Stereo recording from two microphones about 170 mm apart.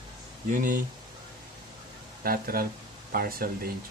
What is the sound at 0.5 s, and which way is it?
Speech, 50° right (ahead or behind).